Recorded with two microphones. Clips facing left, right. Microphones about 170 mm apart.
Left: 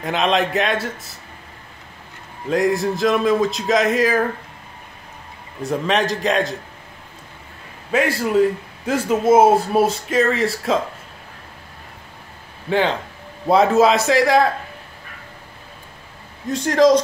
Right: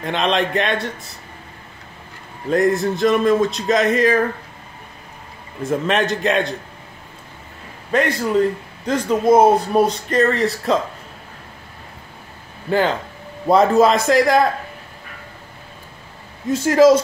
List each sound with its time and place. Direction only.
0.0 s speech: centre (ahead or behind)
2.5 s speech: centre (ahead or behind)
5.6 s speech: centre (ahead or behind)
7.9 s speech: 5° left (ahead or behind)
12.6 s speech: centre (ahead or behind)
16.4 s speech: 5° right (ahead or behind)